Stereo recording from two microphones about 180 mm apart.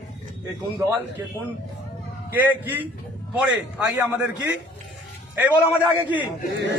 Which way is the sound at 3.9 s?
5° right (ahead or behind).